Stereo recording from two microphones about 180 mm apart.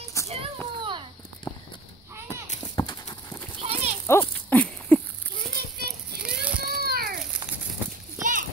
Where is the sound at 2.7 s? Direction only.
25° left (ahead or behind).